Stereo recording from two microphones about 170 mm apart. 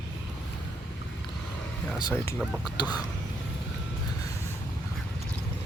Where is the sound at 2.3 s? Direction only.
Centre (ahead or behind).